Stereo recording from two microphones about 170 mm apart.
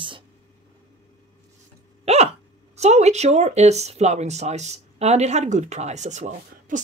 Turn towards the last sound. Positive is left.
turn(degrees=-45)  # may be behind; listen again after turning